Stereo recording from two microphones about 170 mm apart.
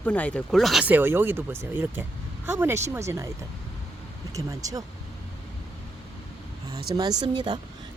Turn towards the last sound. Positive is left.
turn(degrees=-25)  # may be behind; listen again after turning